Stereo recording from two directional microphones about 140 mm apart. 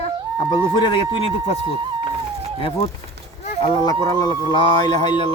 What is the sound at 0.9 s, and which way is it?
Speech, 40° left (ahead or behind).